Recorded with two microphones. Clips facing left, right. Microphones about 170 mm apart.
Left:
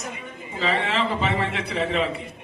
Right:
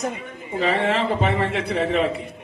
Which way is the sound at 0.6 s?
55° right (ahead or behind).